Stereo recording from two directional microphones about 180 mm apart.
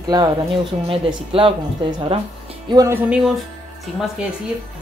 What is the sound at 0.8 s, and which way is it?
Speech, 30° right (ahead or behind).